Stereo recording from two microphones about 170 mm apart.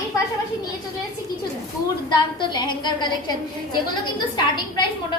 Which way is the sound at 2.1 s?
25° left (ahead or behind).